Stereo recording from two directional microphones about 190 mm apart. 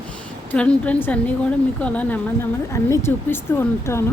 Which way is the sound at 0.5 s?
5° left (ahead or behind).